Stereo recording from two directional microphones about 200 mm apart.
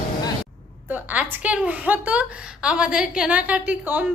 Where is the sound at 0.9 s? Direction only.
10° right (ahead or behind).